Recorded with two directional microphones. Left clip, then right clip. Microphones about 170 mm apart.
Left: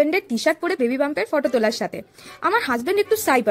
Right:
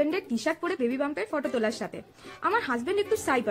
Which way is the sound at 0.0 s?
30° left (ahead or behind).